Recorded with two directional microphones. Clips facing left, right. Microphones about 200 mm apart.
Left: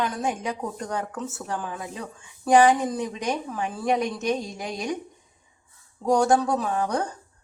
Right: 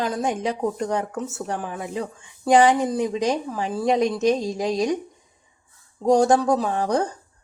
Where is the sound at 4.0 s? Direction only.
90° right.